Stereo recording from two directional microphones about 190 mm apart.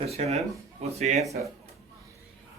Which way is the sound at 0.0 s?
35° right (ahead or behind).